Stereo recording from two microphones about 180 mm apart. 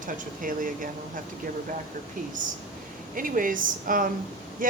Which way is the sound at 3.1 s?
50° right (ahead or behind).